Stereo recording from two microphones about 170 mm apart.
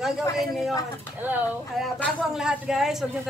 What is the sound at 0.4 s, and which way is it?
A man's voice, centre (ahead or behind).